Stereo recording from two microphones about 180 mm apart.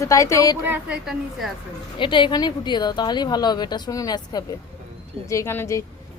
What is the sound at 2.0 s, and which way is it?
A woman's voice, 25° left (ahead or behind).